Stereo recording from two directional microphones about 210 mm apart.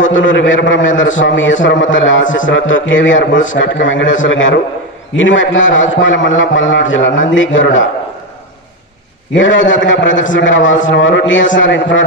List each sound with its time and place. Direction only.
0.0 s a man's voice: 65° left (ahead or behind)
9.3 s a man's voice: 65° left (ahead or behind)